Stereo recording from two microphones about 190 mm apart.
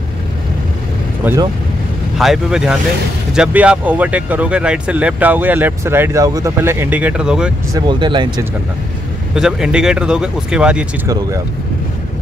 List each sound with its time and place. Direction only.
1.2 s speech: 15° right (ahead or behind)
2.1 s speech: centre (ahead or behind)
7.7 s speech: 25° right (ahead or behind)
9.3 s speech: 5° right (ahead or behind)